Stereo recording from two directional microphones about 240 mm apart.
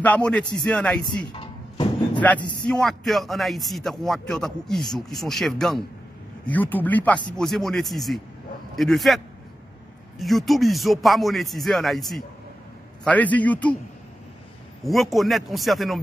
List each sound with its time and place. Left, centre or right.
0.0 s a man's voice: centre
1.2 s a sound: centre
2.7 s a man's voice: centre
14.9 s a man's voice: centre